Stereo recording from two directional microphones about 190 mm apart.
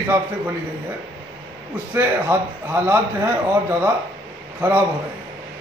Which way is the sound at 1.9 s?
10° right (ahead or behind).